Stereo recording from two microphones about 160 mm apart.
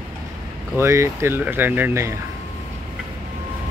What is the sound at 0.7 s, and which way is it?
Speech, 15° right (ahead or behind).